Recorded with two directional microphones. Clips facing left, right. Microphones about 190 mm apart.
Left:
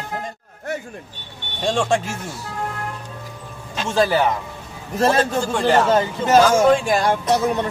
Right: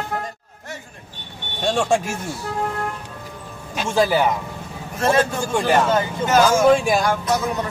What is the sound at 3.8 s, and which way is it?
Speech, 10° right (ahead or behind).